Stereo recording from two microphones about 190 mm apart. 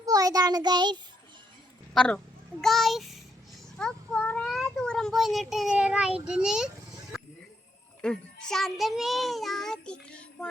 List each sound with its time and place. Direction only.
0.0 s child singing: 20° right (ahead or behind)
1.9 s a child's voice: 5° left (ahead or behind)
6.2 s music: 5° right (ahead or behind)
8.0 s music: 5° left (ahead or behind)